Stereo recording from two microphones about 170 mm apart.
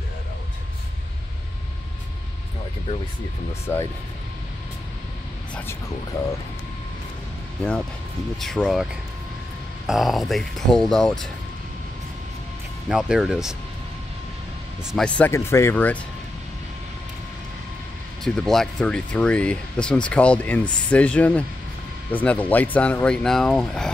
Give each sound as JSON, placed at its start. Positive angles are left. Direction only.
{"t": 3.6, "sound": "speech", "side_deg": 15}
{"t": 8.4, "sound": "speech", "side_deg": 0}
{"t": 9.8, "sound": "speech", "side_deg": 0}
{"t": 12.8, "sound": "speech", "side_deg": -5}
{"t": 14.9, "sound": "speech", "side_deg": 5}
{"t": 18.2, "sound": "speech", "side_deg": 0}